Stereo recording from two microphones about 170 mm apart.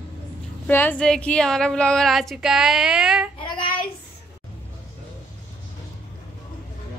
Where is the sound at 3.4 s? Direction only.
30° left (ahead or behind).